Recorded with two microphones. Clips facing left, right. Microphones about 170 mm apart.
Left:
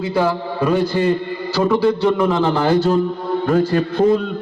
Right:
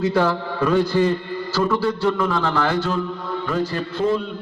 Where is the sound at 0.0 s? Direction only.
10° left (ahead or behind).